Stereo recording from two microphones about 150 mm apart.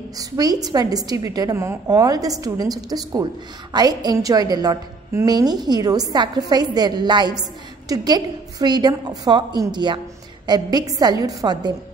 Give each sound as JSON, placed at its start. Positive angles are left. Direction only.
{"t": 0.2, "sound": "a woman's voice", "side_deg": -25}